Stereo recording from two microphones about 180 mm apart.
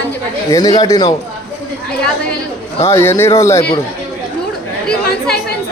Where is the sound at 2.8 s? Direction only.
15° left (ahead or behind).